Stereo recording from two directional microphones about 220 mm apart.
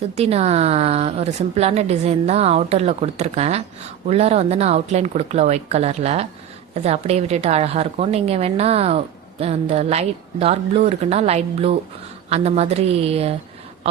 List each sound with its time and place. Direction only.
0.2 s a woman's voice: 30° right (ahead or behind)